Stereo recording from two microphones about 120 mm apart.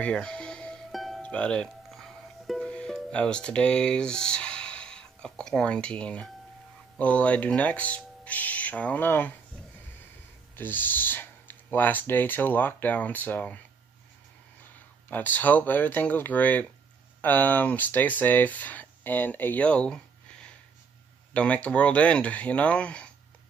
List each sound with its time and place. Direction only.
0.0 s music: 5° left (ahead or behind)
7.0 s speech: 10° left (ahead or behind)
10.5 s speech: 15° left (ahead or behind)
15.0 s speech: 15° left (ahead or behind)
21.3 s speech: 10° left (ahead or behind)